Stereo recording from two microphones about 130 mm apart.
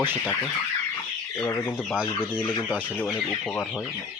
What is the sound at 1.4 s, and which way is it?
Speech, 25° left (ahead or behind).